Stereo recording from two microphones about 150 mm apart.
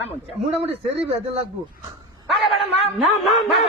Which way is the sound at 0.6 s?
45° right (ahead or behind).